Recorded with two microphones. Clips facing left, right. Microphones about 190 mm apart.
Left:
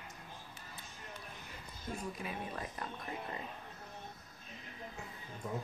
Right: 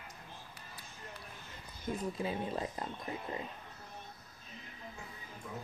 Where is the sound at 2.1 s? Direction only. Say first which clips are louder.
Right 6 dB; 25° right (ahead or behind).